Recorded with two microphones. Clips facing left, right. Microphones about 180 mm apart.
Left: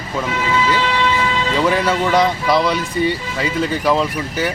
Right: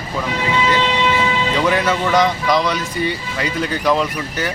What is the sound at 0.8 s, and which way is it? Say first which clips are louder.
Vehicle: even; 20° right (ahead or behind).